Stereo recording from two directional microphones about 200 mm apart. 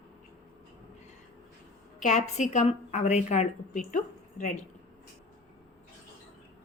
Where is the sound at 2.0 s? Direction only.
35° left (ahead or behind).